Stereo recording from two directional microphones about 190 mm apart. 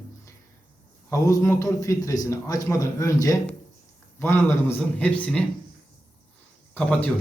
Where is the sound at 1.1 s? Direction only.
15° left (ahead or behind).